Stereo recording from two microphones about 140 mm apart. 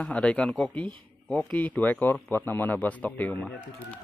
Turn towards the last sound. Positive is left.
turn(degrees=10)  # may be behind; listen again after turning